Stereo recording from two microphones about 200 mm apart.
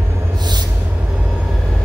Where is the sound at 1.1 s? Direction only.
Centre (ahead or behind).